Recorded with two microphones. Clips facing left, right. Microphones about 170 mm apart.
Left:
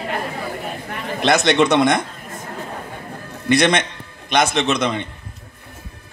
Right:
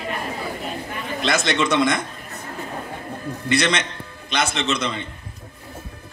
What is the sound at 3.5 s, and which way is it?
A man's voice, 55° left (ahead or behind).